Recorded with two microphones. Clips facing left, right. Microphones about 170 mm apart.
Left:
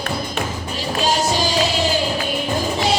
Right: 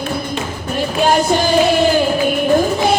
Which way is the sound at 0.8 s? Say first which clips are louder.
Right 6 dB; 55° right (ahead or behind).